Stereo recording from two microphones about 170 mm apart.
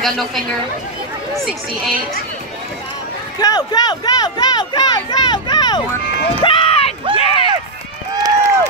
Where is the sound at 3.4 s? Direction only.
25° left (ahead or behind).